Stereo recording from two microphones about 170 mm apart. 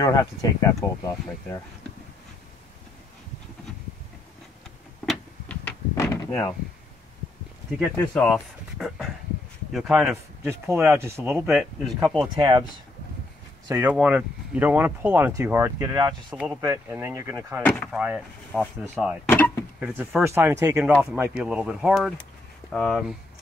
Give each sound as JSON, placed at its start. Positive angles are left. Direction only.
{"t": 0.0, "sound": "speech", "side_deg": 20}
{"t": 5.0, "sound": "door", "side_deg": 5}
{"t": 8.1, "sound": "speech", "side_deg": 5}
{"t": 10.4, "sound": "speech", "side_deg": -15}
{"t": 11.4, "sound": "speech", "side_deg": 0}
{"t": 12.4, "sound": "speech", "side_deg": -25}
{"t": 13.7, "sound": "speech", "side_deg": -15}
{"t": 13.9, "sound": "speech", "side_deg": -5}
{"t": 16.3, "sound": "speech", "side_deg": -10}
{"t": 19.2, "sound": "power windows", "side_deg": 15}
{"t": 19.8, "sound": "speech", "side_deg": -10}